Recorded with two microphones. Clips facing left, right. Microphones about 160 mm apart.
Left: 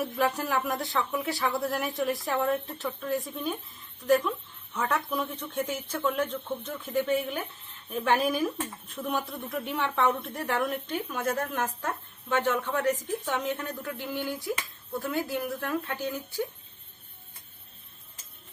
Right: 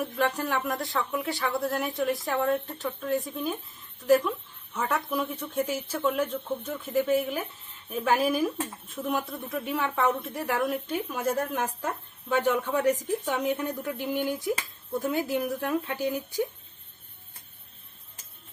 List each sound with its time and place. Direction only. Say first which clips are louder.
0.0 s a woman's voice: even; centre (ahead or behind); by 16.5 s 15° right (ahead or behind)